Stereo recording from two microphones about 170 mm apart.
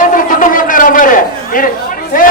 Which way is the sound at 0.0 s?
55° left (ahead or behind).